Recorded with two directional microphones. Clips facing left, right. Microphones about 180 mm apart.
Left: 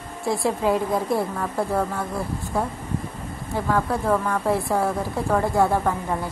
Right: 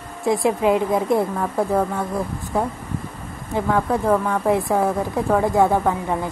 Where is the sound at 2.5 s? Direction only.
20° right (ahead or behind).